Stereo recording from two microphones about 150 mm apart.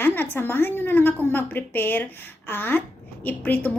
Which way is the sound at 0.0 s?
15° left (ahead or behind).